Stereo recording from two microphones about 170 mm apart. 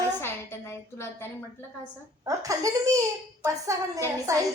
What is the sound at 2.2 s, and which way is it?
A woman's voice, 20° right (ahead or behind).